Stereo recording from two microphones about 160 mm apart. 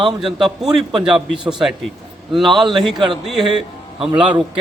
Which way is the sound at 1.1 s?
5° right (ahead or behind).